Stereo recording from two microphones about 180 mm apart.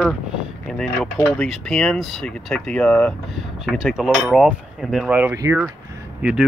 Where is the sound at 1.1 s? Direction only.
10° left (ahead or behind); by 5.6 s 15° right (ahead or behind).